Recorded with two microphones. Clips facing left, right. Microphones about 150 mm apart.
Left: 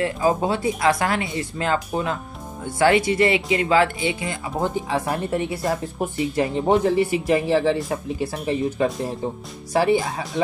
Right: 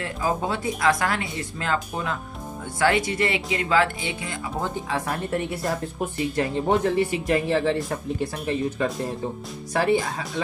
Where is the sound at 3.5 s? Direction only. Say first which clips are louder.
Left 4 dB; 20° left (ahead or behind).